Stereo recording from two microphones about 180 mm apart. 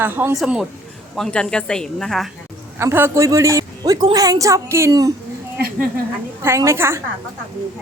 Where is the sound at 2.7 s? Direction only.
15° right (ahead or behind).